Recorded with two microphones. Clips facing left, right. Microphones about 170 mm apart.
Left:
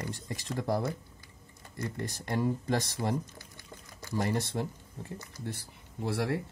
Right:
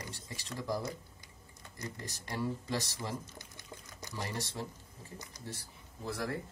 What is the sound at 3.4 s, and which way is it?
Pour, 20° right (ahead or behind).